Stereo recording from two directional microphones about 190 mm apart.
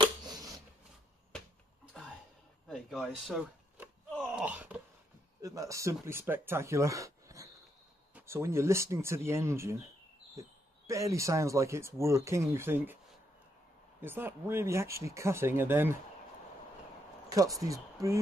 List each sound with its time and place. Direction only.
0.0 s a sound: 20° right (ahead or behind)
3.0 s speech: 5° right (ahead or behind)
4.1 s groan: 5° right (ahead or behind)
5.4 s speech: 15° right (ahead or behind)
10.9 s speech: 15° right (ahead or behind)
14.0 s speech: 10° right (ahead or behind)
17.3 s speech: 20° right (ahead or behind)